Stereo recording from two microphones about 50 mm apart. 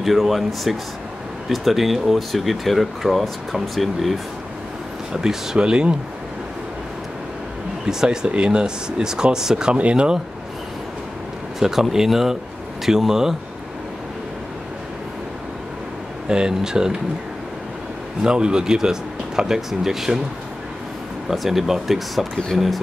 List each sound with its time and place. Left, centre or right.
0.0 s speech: centre
5.1 s speech: centre
7.8 s speech: centre
11.6 s speech: centre
16.3 s speech: centre
18.2 s speech: centre
21.3 s speech: centre